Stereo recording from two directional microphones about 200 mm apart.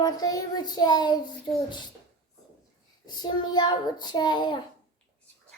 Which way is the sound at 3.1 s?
20° left (ahead or behind).